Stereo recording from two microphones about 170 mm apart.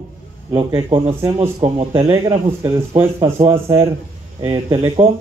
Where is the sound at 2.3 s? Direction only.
35° right (ahead or behind).